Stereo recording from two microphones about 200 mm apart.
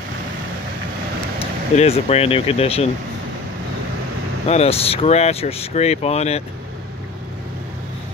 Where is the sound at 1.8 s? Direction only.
30° left (ahead or behind).